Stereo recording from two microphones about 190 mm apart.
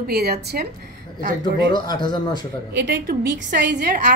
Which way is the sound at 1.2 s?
45° right (ahead or behind).